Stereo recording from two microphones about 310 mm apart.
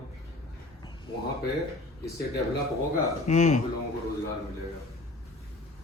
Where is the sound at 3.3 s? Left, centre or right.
Left.